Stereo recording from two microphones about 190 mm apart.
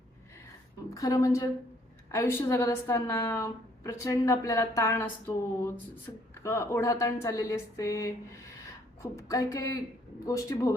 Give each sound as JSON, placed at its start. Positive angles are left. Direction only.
{"t": 0.9, "sound": "a woman's voice", "side_deg": 15}